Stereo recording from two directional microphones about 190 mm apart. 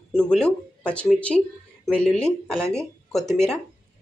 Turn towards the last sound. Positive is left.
turn(degrees=5)  # may be behind; listen again after turning